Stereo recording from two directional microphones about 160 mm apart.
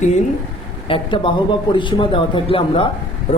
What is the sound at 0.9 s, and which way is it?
A man's voice, 30° left (ahead or behind).